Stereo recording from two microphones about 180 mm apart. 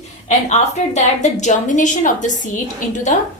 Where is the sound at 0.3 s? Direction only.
40° left (ahead or behind).